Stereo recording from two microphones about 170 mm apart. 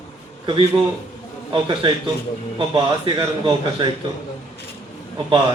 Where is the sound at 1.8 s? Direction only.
30° right (ahead or behind).